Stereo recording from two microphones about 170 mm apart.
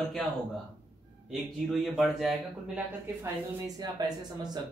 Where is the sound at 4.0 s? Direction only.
20° right (ahead or behind).